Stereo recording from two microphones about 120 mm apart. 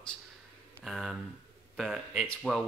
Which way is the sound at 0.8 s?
Centre (ahead or behind).